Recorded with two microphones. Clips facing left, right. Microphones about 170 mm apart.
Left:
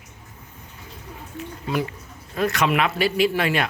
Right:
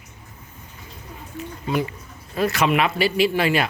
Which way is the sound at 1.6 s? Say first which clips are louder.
Right 2 dB; centre (ahead or behind).